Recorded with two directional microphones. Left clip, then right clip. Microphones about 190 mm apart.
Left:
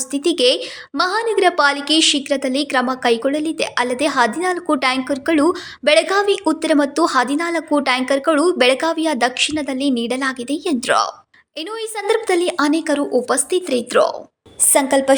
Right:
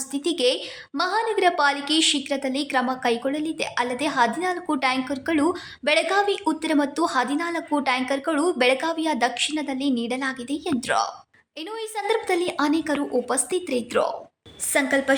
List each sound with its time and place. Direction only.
0.1 s a woman's voice: 20° left (ahead or behind)